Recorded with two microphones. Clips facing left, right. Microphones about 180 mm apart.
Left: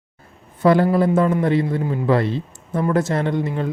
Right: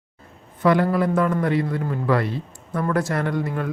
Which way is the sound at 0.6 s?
30° left (ahead or behind).